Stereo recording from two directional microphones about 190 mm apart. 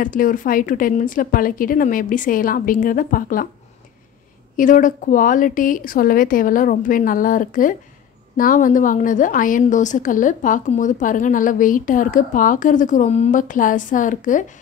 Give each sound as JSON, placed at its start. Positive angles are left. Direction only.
{"t": 0.0, "sound": "a woman's voice", "side_deg": 45}
{"t": 4.6, "sound": "a woman's voice", "side_deg": 45}